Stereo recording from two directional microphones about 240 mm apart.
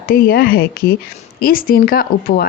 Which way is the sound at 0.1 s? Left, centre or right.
Left.